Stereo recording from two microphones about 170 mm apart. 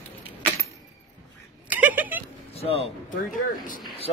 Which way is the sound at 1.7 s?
10° right (ahead or behind).